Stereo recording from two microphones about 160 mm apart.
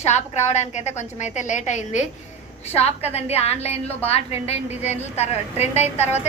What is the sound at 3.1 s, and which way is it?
A woman's voice, 40° left (ahead or behind).